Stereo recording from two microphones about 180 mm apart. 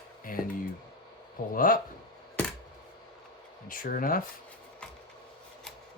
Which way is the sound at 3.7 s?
50° left (ahead or behind).